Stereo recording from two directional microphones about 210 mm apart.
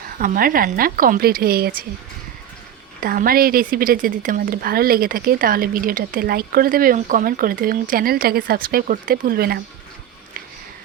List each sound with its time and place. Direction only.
0.2 s speech: 40° right (ahead or behind)
3.0 s speech: 40° right (ahead or behind)